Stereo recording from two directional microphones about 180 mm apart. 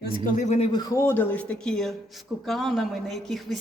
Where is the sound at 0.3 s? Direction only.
40° left (ahead or behind).